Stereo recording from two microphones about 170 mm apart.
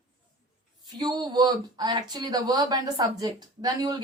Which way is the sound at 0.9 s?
25° right (ahead or behind).